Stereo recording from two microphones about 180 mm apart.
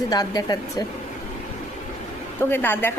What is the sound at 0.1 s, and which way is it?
Speech, 20° left (ahead or behind).